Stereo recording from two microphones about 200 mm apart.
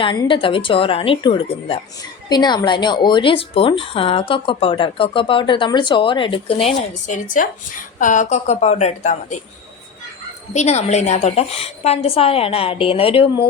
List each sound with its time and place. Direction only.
0.0 s a woman's voice: 25° left (ahead or behind)
10.5 s speech: 35° left (ahead or behind)